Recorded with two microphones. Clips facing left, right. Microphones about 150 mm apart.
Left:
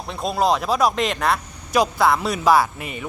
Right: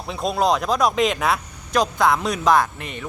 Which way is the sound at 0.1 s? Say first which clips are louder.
Even; centre (ahead or behind).